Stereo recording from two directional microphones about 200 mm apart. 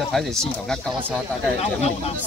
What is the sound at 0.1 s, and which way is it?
Speech, 5° left (ahead or behind).